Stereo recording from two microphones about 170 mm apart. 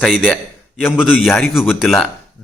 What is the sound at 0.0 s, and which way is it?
A man's voice, centre (ahead or behind).